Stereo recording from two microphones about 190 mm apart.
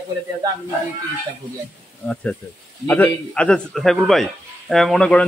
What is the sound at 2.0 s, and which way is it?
Speech, 10° left (ahead or behind).